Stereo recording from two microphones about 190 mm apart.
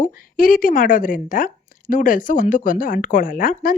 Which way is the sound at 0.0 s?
45° left (ahead or behind).